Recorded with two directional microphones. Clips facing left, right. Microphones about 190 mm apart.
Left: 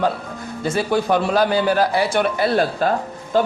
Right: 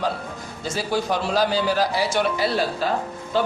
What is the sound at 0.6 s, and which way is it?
A man's voice, 60° left (ahead or behind).